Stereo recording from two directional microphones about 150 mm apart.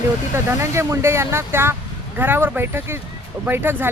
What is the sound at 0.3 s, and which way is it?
Speech, 20° right (ahead or behind).